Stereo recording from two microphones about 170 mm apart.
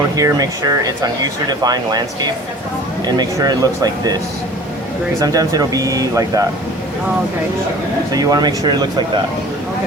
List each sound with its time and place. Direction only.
0.2 s speech: 20° right (ahead or behind)
5.2 s speech: 20° right (ahead or behind)
8.1 s speech: 20° right (ahead or behind)